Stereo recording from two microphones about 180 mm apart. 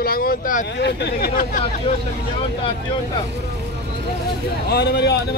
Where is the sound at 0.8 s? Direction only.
65° left (ahead or behind).